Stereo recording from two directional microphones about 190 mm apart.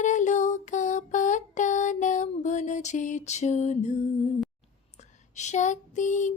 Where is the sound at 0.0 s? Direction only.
40° left (ahead or behind).